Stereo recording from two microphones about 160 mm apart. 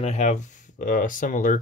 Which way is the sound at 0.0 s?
45° left (ahead or behind).